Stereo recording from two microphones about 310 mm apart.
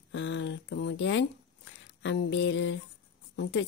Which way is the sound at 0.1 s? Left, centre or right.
Left.